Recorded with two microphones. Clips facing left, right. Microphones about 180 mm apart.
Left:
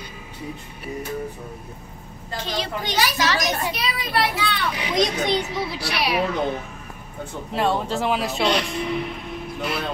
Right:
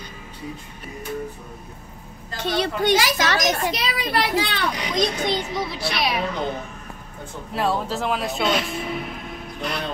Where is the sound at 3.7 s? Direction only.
80° right.